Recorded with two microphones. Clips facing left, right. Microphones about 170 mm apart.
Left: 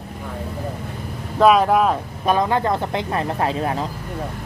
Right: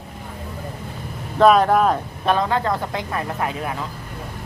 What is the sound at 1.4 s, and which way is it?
Speech, 5° left (ahead or behind).